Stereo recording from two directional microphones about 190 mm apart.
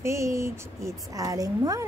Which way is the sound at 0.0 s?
15° right (ahead or behind).